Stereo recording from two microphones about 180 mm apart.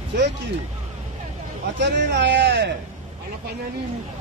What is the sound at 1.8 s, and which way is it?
Speech, 70° right (ahead or behind).